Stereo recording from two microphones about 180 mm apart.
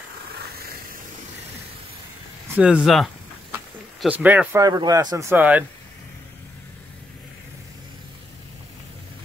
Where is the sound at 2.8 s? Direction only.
Centre (ahead or behind).